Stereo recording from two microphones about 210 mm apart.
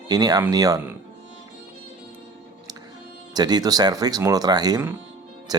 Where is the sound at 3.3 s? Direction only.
20° right (ahead or behind).